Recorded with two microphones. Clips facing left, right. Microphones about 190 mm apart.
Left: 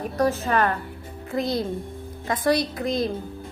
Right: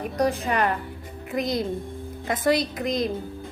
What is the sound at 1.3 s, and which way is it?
Female singing, 20° right (ahead or behind).